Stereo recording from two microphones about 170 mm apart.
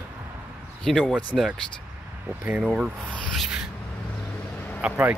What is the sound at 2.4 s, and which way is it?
Speech, 10° right (ahead or behind).